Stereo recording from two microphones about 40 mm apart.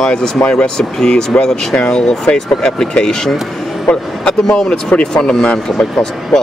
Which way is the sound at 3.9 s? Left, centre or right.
Left.